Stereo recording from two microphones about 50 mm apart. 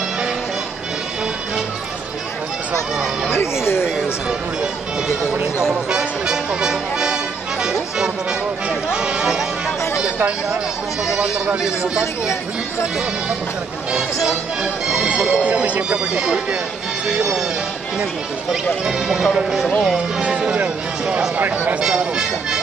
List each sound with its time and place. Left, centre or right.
3.3 s speech: left
5.7 s music: centre
11.1 s speech: centre
14.2 s speech: centre
15.4 s speech: right
18.9 s speech: centre
20.2 s speech: right
21.8 s speech: centre